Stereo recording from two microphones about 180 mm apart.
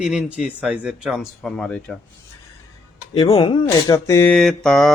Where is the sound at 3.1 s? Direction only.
25° left (ahead or behind); by 4.9 s centre (ahead or behind).